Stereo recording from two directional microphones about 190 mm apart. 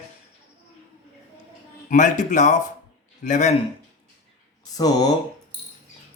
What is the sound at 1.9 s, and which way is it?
Speech, 40° left (ahead or behind).